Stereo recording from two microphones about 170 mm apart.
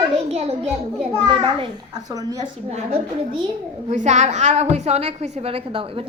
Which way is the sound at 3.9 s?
40° right (ahead or behind).